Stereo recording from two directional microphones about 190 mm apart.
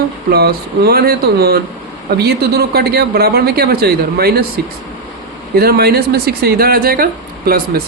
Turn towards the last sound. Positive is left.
turn(degrees=-50)  # may be behind; listen again after turning